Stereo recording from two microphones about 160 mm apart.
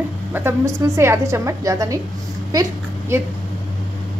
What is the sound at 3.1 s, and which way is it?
Speech, 15° right (ahead or behind).